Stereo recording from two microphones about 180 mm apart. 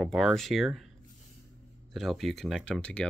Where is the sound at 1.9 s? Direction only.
Centre (ahead or behind).